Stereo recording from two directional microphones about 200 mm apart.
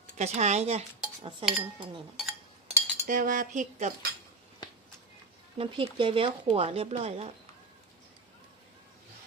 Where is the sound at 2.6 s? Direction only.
40° right (ahead or behind).